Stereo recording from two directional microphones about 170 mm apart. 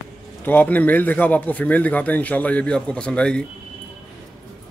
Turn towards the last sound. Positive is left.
turn(degrees=5)  # may be behind; listen again after turning